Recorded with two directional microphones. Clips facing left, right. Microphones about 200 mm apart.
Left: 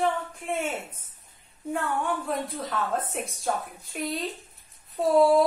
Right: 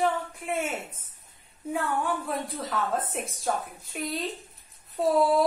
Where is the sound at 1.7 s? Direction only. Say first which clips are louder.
Even; centre (ahead or behind).